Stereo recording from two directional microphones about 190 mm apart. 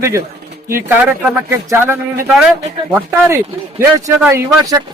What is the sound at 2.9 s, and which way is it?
Speech, 10° right (ahead or behind).